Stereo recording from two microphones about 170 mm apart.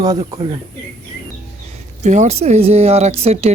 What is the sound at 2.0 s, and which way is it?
Speech, 45° right (ahead or behind).